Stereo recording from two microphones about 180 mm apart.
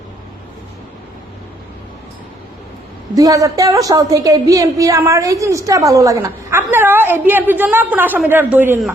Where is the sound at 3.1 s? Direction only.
20° right (ahead or behind).